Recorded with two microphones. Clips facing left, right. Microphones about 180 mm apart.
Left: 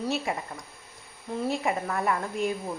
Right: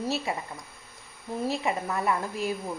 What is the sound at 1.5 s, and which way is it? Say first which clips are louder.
A woman's voice: left 1 dB; centre (ahead or behind).